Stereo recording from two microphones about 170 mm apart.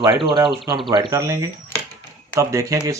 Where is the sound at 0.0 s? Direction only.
25° right (ahead or behind).